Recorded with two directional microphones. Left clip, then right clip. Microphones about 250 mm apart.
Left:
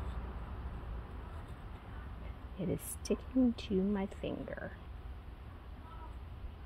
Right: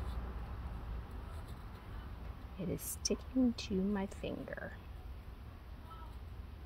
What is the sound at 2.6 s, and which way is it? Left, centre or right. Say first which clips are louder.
A woman's voice: left 3 dB; left.